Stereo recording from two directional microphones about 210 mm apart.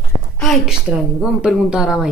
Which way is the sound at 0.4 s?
Centre (ahead or behind).